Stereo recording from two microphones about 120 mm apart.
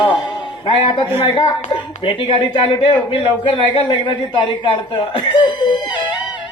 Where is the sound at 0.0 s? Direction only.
40° left (ahead or behind).